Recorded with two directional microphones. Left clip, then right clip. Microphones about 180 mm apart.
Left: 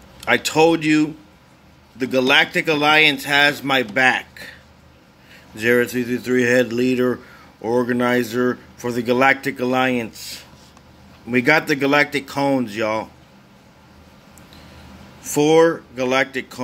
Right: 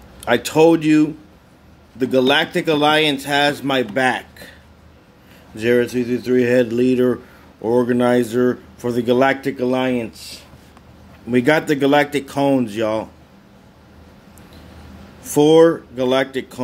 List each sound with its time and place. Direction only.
0.2 s speech: 5° right (ahead or behind)
5.6 s speech: 5° left (ahead or behind)
11.2 s speech: 5° right (ahead or behind)
15.2 s speech: 5° right (ahead or behind)